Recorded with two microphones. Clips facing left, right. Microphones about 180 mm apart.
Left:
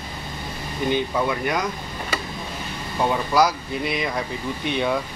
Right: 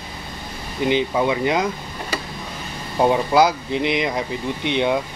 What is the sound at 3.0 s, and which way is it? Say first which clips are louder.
Speech: right 4 dB; 25° right (ahead or behind).